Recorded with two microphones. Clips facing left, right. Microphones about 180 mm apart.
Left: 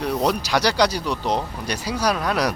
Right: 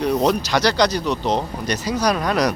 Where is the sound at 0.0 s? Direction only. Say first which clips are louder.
Right 4 dB; 5° left (ahead or behind).